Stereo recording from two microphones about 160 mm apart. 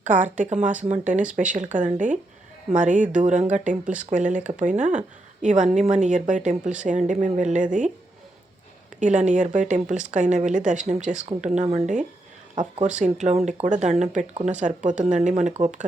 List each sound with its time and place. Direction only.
0.0 s a woman's voice: 55° right (ahead or behind)
9.0 s a woman's voice: 50° right (ahead or behind)